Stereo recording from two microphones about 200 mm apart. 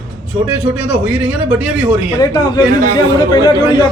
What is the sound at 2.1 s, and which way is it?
Speech, 20° left (ahead or behind).